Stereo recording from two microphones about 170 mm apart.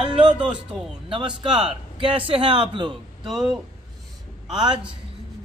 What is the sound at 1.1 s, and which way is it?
A man's voice, 30° right (ahead or behind).